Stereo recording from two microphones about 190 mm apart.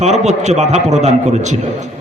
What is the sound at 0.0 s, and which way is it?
A man's voice, 35° right (ahead or behind).